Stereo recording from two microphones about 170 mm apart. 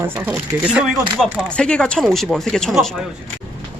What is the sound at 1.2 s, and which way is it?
Speech, 5° left (ahead or behind).